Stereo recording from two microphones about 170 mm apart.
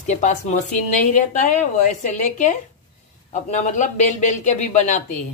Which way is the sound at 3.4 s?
45° left (ahead or behind).